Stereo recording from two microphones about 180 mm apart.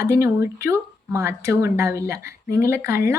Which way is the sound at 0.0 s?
15° right (ahead or behind).